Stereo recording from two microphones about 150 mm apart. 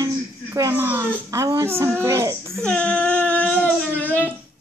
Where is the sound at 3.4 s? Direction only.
10° left (ahead or behind).